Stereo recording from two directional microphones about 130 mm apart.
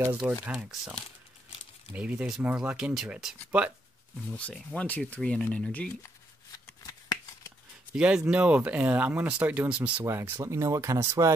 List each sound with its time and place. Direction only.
0.3 s speech: 10° right (ahead or behind)
1.9 s speech: 10° right (ahead or behind)
4.4 s speech: 10° left (ahead or behind)
6.8 s shuffling cards: 30° left (ahead or behind)
7.9 s speech: 10° right (ahead or behind)